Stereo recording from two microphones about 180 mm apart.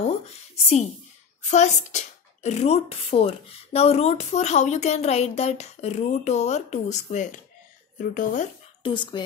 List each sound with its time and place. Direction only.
1.5 s speech: 40° left (ahead or behind)
8.8 s speech: 25° left (ahead or behind)